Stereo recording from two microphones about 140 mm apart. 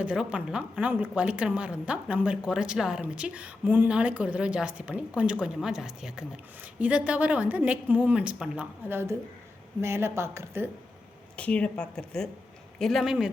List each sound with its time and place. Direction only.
0.0 s a woman's voice: 5° right (ahead or behind)
11.3 s a woman's voice: 10° left (ahead or behind)